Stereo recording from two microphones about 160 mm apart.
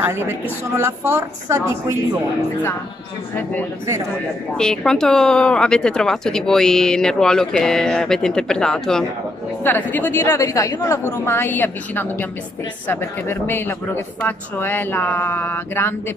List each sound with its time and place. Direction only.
0.0 s a woman's voice: 15° right (ahead or behind)
4.6 s a woman's voice: 5° left (ahead or behind)